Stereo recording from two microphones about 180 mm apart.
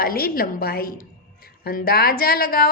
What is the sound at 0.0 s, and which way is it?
A woman's voice, 55° left (ahead or behind).